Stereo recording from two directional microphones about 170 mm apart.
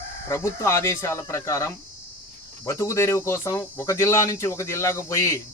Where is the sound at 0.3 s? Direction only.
15° left (ahead or behind).